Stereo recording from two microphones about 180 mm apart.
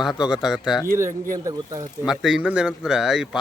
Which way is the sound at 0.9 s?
15° right (ahead or behind).